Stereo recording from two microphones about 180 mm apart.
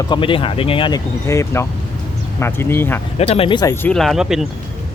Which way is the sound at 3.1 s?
35° left (ahead or behind).